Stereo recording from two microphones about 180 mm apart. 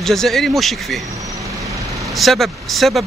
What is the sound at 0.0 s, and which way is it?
Speech, centre (ahead or behind).